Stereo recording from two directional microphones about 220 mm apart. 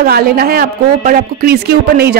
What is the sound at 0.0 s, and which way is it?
A woman's voice, 45° right (ahead or behind).